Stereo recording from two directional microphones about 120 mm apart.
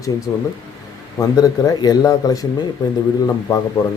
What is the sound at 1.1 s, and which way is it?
Speech, 30° left (ahead or behind).